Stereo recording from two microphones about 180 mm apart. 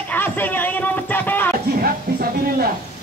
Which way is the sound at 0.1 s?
10° left (ahead or behind).